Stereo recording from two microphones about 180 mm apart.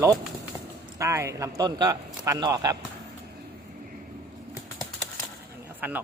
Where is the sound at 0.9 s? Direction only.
15° right (ahead or behind).